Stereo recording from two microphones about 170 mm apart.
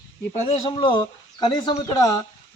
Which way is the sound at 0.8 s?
25° left (ahead or behind).